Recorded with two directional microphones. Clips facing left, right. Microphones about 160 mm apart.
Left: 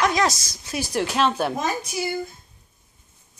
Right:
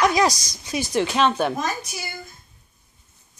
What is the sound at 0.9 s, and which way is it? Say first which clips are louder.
Speech: right 2 dB; 5° left (ahead or behind).